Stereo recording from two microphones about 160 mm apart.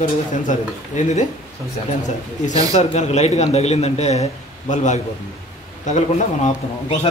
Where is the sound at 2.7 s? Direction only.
45° left (ahead or behind).